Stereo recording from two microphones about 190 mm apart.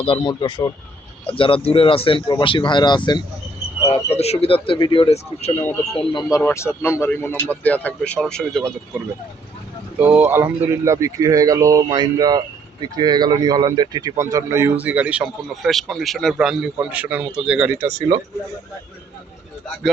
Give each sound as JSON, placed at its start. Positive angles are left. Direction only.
{"t": 0.0, "sound": "speech", "side_deg": 25}
{"t": 5.6, "sound": "speech", "side_deg": 5}
{"t": 10.0, "sound": "speech", "side_deg": -10}